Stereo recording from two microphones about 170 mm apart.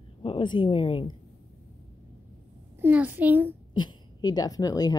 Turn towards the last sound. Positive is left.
turn(degrees=20)  # may be behind; listen again after turning